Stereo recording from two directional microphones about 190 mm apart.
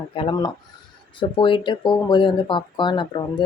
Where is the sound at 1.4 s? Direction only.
25° left (ahead or behind).